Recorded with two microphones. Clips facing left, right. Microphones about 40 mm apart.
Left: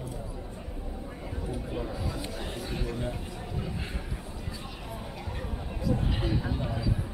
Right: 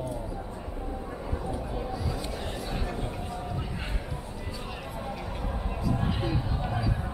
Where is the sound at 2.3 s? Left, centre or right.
Centre.